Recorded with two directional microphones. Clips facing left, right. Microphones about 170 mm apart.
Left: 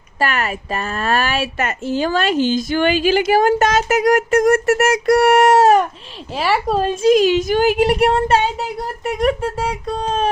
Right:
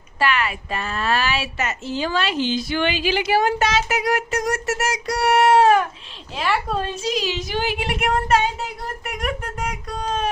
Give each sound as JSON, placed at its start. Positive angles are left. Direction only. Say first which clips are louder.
{"t": 0.2, "sound": "a woman's voice", "louder": "left 1 dB", "side_deg": 45}
{"t": 7.0, "sound": "a woman's voice", "louder": "left 12 dB", "side_deg": 50}